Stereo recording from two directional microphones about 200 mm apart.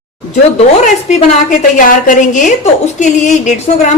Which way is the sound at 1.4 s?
40° left (ahead or behind).